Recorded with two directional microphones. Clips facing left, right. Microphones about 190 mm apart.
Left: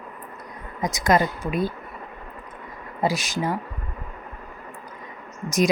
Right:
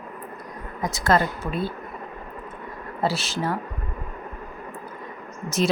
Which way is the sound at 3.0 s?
15° left (ahead or behind).